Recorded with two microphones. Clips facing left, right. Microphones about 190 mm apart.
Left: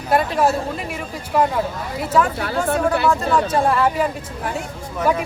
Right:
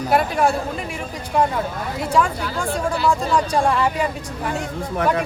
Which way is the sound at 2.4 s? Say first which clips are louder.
Left 4 dB; 60° left (ahead or behind).